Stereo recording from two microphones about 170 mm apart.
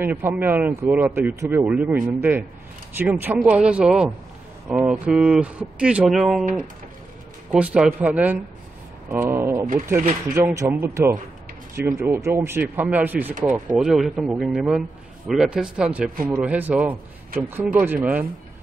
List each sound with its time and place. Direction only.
0.0 s speech: 10° right (ahead or behind)
7.5 s speech: 5° right (ahead or behind)
9.7 s speech: 50° right (ahead or behind)
10.3 s speech: 15° right (ahead or behind)